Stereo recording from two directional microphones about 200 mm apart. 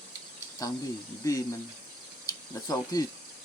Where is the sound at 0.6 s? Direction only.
15° left (ahead or behind).